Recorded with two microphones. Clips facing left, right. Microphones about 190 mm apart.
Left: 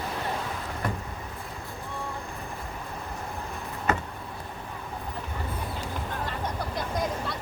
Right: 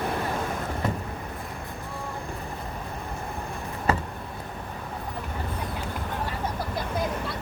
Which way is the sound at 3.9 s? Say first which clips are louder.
Right 2 dB; 35° right (ahead or behind).